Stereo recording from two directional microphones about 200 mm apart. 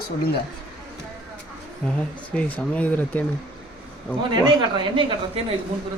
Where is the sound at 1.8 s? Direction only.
5° left (ahead or behind).